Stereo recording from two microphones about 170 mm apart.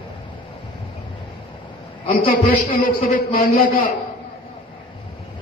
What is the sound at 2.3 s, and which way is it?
A man's voice, 60° left (ahead or behind).